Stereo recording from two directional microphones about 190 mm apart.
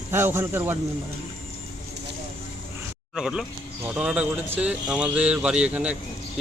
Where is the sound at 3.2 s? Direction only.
Centre (ahead or behind).